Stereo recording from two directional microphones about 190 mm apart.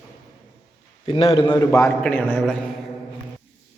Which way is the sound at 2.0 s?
5° left (ahead or behind).